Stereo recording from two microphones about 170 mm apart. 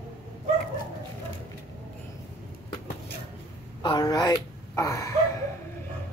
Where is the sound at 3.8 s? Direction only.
25° left (ahead or behind).